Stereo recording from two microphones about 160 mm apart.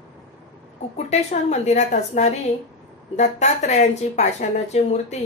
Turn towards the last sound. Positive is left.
turn(degrees=45)  # may be behind; listen again after turning